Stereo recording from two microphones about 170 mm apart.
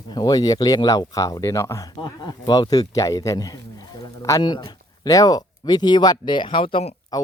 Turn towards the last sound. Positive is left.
turn(degrees=25)  # may be behind; listen again after turning